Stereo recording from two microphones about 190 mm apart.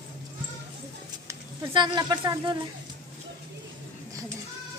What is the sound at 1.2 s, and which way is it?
Speech, 20° right (ahead or behind).